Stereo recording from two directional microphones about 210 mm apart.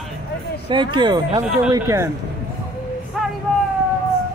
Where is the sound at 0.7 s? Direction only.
20° right (ahead or behind).